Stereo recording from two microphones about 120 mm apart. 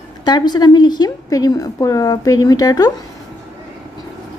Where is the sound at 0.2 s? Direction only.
35° left (ahead or behind).